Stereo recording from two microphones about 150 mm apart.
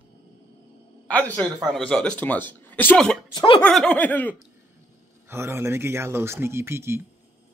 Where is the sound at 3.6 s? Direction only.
5° left (ahead or behind).